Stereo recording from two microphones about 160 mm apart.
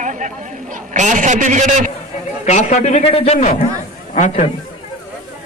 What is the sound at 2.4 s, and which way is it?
A man's voice, 45° left (ahead or behind).